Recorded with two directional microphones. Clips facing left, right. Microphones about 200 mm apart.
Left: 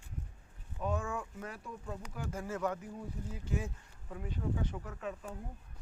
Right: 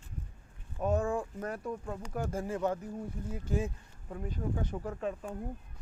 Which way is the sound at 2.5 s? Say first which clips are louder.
Right 3 dB; 30° right (ahead or behind).